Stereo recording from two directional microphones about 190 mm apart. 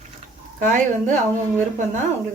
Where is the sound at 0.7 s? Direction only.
40° right (ahead or behind).